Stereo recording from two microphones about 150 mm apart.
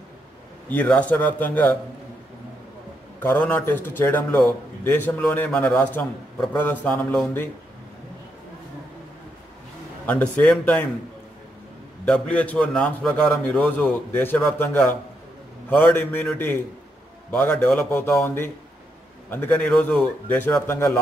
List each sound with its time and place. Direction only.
0.7 s a man's voice: 10° left (ahead or behind)
3.2 s a man's voice: 10° left (ahead or behind)
10.0 s a man's voice: 10° left (ahead or behind)
12.0 s a man's voice: 10° left (ahead or behind)